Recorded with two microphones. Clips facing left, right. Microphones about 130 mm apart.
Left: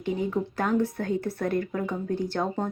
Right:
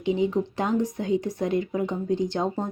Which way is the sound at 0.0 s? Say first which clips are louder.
Right 4 dB; 20° right (ahead or behind).